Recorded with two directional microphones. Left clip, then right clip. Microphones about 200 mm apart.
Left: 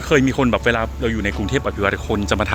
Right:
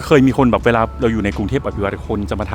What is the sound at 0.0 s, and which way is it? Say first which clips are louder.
Speech: right 4 dB; 20° right (ahead or behind).